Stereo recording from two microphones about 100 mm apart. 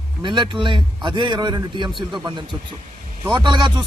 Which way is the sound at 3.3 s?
45° right (ahead or behind).